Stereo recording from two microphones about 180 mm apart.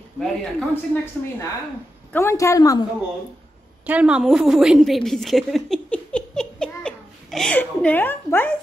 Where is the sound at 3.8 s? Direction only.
5° right (ahead or behind); by 8.5 s 10° left (ahead or behind).